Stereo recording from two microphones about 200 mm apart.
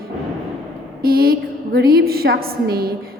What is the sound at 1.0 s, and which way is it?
A woman's voice, 50° right (ahead or behind).